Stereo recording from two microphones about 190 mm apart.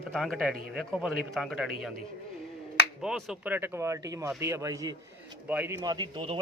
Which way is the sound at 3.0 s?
Centre (ahead or behind).